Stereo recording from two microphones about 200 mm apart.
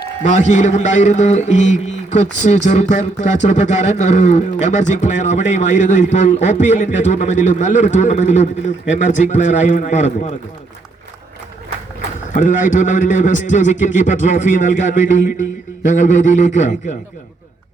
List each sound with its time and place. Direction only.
0.2 s a man's voice: 35° left (ahead or behind)
12.3 s a man's voice: 40° left (ahead or behind)
15.9 s a man's voice: 40° left (ahead or behind)